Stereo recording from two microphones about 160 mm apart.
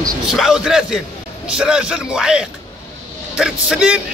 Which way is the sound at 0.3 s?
Centre (ahead or behind).